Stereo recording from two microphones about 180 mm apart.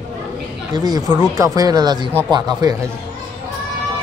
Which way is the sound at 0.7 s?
20° right (ahead or behind).